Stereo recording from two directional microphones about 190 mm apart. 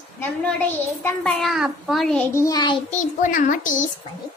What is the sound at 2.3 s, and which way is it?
Child singing, 20° left (ahead or behind).